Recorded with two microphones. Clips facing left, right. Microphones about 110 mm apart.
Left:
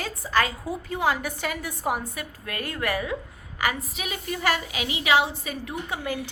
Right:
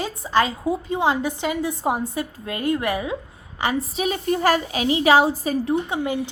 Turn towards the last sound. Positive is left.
turn(degrees=-25)  # may be behind; listen again after turning